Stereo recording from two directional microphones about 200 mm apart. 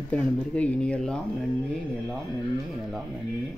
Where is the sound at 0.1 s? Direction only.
5° left (ahead or behind).